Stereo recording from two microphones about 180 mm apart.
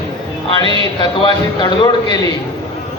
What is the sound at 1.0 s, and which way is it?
A man's voice, 25° left (ahead or behind).